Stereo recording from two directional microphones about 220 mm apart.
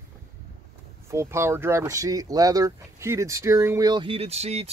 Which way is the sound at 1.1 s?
10° right (ahead or behind).